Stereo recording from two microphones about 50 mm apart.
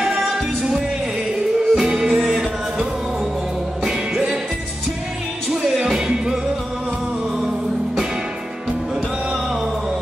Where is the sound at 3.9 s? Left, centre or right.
Centre.